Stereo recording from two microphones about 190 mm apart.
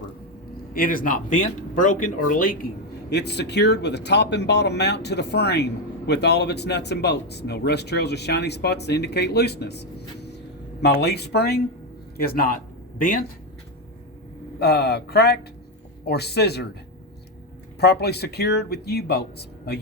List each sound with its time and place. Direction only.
0.7 s speech: 50° left (ahead or behind)
3.1 s a man's voice: 60° left (ahead or behind); by 13.2 s 45° left (ahead or behind)
14.6 s speech: 60° left (ahead or behind)
17.7 s speech: 60° left (ahead or behind)